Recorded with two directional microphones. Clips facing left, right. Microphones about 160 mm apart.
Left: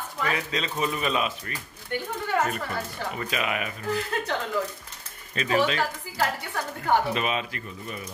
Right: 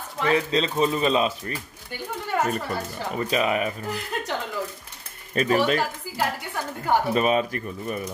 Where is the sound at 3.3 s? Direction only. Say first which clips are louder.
Right 7 dB; 35° right (ahead or behind).